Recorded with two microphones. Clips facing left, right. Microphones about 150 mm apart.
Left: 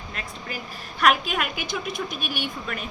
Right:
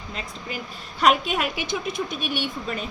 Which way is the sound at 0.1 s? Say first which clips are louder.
Right 2 dB; 25° right (ahead or behind).